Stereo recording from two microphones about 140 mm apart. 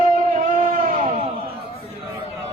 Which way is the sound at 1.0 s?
55° right (ahead or behind).